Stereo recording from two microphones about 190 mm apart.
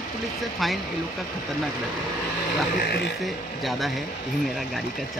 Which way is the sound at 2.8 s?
60° left (ahead or behind).